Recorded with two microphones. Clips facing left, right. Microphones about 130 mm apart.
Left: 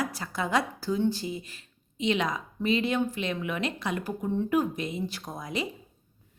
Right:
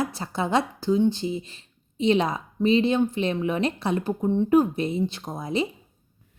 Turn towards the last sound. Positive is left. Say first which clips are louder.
# right 6 dB
turn(degrees=-25)  # may be behind; listen again after turning